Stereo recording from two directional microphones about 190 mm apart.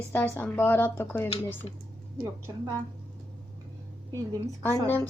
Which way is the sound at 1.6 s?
25° left (ahead or behind).